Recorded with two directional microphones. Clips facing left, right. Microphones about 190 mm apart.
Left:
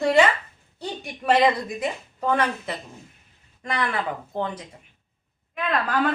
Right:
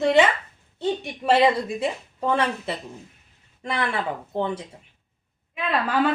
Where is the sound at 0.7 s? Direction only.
25° right (ahead or behind).